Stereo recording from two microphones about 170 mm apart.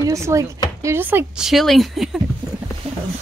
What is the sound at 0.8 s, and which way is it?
Speech, 15° right (ahead or behind).